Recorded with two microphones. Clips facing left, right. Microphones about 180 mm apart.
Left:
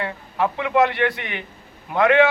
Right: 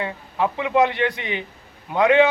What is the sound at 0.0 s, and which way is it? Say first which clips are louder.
A man's voice: even; 15° right (ahead or behind).